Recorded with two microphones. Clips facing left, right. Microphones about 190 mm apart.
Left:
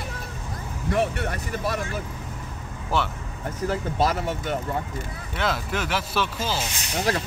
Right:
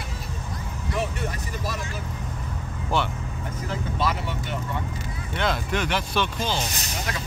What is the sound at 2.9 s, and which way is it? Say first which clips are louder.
Speech: even; centre (ahead or behind).